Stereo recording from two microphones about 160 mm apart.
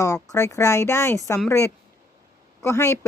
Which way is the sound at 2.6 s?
15° left (ahead or behind).